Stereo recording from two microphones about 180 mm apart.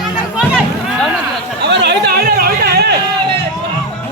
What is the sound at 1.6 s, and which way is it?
Chatter, 70° right (ahead or behind).